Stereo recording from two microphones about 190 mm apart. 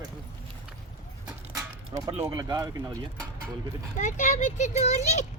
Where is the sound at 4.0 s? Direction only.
40° left (ahead or behind).